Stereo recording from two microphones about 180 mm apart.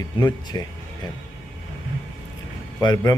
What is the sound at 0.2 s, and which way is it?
Speech, 25° left (ahead or behind).